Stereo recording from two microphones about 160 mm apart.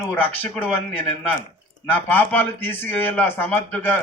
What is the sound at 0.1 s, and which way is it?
A man's voice, 10° left (ahead or behind).